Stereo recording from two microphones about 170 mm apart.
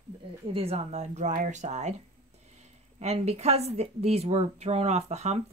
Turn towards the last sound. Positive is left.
turn(degrees=-40)  # may be behind; listen again after turning